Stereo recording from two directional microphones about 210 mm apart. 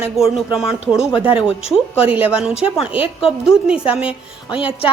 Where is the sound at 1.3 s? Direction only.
25° left (ahead or behind).